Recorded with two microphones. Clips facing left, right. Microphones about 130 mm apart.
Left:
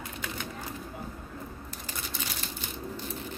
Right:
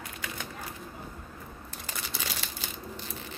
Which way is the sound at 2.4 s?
90° right.